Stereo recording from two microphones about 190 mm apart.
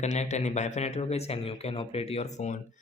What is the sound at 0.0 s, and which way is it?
A man's voice, 35° left (ahead or behind).